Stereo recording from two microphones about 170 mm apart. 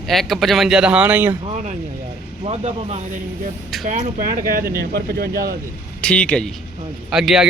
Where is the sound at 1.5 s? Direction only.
40° right (ahead or behind); by 5.5 s 65° right (ahead or behind).